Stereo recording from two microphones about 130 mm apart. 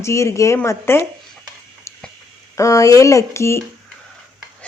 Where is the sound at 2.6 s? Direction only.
25° left (ahead or behind).